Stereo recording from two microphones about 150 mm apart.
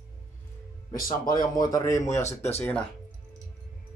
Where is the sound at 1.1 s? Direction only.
25° left (ahead or behind).